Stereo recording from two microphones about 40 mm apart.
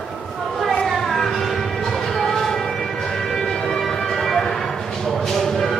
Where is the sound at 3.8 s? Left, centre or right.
Centre.